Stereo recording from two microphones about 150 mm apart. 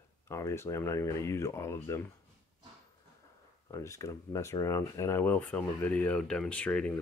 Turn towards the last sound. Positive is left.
turn(degrees=10)  # may be behind; listen again after turning